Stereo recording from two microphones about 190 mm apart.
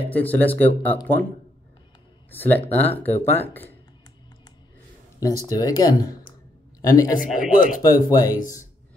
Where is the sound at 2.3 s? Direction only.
10° left (ahead or behind).